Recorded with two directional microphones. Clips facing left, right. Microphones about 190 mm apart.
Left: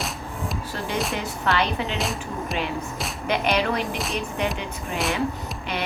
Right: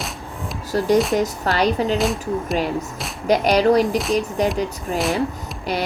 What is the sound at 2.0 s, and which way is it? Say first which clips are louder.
Speech: right 7 dB; centre (ahead or behind).